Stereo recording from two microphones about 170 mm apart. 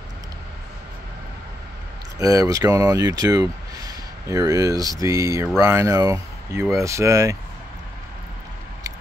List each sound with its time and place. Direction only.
2.1 s speech: 20° right (ahead or behind)